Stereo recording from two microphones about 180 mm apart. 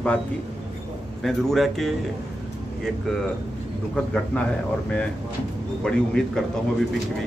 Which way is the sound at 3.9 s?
5° left (ahead or behind).